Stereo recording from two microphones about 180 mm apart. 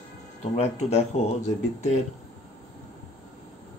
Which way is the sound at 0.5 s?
35° left (ahead or behind).